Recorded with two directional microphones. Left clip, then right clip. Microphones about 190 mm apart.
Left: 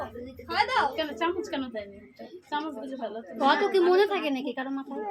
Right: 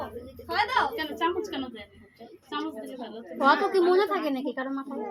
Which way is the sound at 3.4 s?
5° left (ahead or behind).